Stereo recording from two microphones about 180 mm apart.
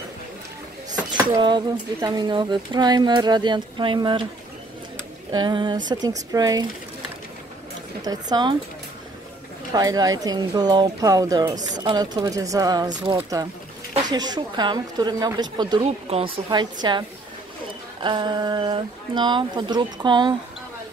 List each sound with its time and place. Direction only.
1.3 s speech: 25° right (ahead or behind)
5.3 s speech: 25° right (ahead or behind)
8.0 s speech: 20° right (ahead or behind)
9.7 s speech: 20° right (ahead or behind)
18.0 s speech: 25° right (ahead or behind)